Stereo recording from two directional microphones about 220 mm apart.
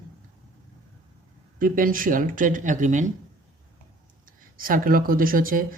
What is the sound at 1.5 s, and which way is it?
Speech, 40° right (ahead or behind).